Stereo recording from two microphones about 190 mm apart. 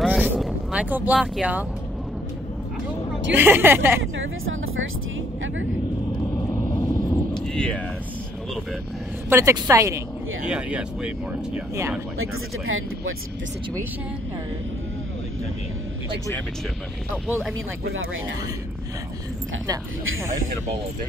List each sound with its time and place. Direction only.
0.0 s vehicle: centre (ahead or behind)
3.3 s a woman's voice: 10° right (ahead or behind)
4.0 s speech: 90° right
6.5 s vehicle: 15° left (ahead or behind)
7.5 s speech: 5° left (ahead or behind)
9.3 s a woman's voice: 15° right (ahead or behind)
10.5 s speech: 5° right (ahead or behind)
12.2 s speech: 90° right
17.3 s a woman's voice: 5° right (ahead or behind)